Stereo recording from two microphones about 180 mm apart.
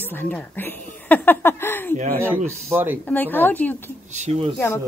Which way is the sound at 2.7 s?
10° right (ahead or behind).